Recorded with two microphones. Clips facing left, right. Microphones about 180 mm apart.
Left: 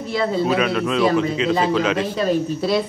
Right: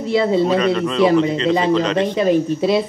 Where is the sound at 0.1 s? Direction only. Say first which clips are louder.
Right 5 dB; 25° right (ahead or behind).